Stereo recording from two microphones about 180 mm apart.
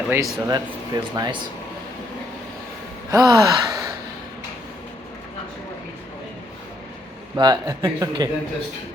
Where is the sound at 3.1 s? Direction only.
20° right (ahead or behind).